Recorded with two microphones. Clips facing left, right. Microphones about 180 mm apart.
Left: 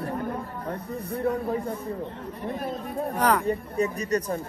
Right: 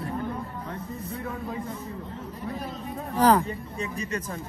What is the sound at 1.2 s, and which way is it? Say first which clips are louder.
Speech: left 10 dB; 35° left (ahead or behind).